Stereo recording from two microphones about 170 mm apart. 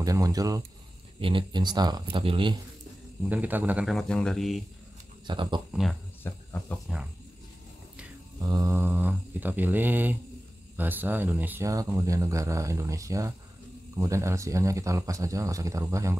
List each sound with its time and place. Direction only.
0.0 s speech: 20° right (ahead or behind)
3.3 s speech: 10° right (ahead or behind)
5.2 s speech: 30° right (ahead or behind)
5.7 s speech: centre (ahead or behind)
6.2 s speech: 10° left (ahead or behind)
8.4 s speech: 20° right (ahead or behind)